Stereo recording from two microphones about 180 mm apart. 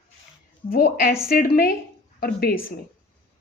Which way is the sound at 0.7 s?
55° left (ahead or behind).